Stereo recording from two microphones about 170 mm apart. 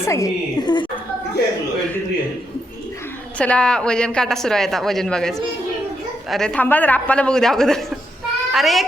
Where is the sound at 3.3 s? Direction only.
5° left (ahead or behind).